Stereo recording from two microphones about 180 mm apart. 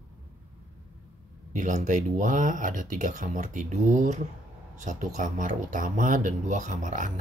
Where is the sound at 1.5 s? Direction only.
45° right (ahead or behind).